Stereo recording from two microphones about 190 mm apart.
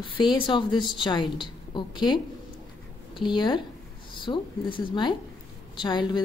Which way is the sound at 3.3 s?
25° left (ahead or behind).